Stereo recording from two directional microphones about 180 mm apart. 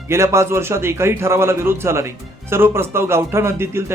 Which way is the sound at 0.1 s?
15° right (ahead or behind).